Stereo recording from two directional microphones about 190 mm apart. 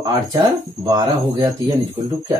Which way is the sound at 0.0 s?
20° right (ahead or behind).